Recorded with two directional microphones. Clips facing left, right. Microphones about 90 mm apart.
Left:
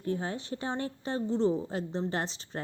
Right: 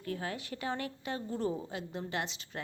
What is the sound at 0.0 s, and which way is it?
A woman's voice, 30° left (ahead or behind).